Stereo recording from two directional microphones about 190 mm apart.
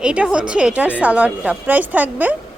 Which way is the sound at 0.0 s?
5° right (ahead or behind).